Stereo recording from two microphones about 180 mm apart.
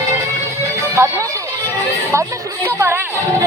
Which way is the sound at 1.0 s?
15° right (ahead or behind).